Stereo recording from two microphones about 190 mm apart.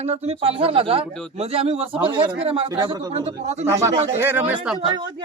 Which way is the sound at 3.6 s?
15° right (ahead or behind).